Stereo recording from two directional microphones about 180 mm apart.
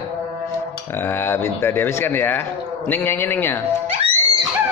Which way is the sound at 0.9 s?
10° left (ahead or behind).